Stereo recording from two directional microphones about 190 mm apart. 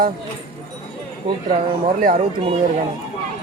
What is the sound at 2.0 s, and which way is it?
Speech, 45° right (ahead or behind).